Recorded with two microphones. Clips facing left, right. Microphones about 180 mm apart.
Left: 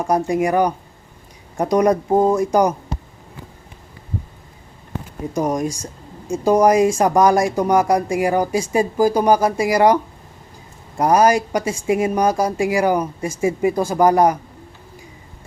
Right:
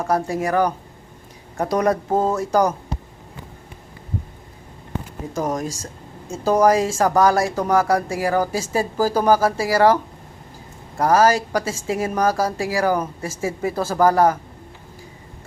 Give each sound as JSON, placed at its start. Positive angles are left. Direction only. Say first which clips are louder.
{"t": 0.0, "sound": "speech", "louder": "left 3 dB", "side_deg": 15}
{"t": 5.3, "sound": "speech", "louder": "left 4 dB", "side_deg": 15}